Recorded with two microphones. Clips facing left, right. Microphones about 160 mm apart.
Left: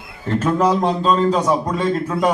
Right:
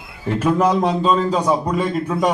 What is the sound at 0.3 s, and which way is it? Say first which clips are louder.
A man's voice: even; 5° right (ahead or behind).